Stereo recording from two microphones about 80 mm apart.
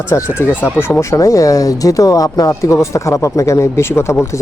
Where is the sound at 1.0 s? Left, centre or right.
Left.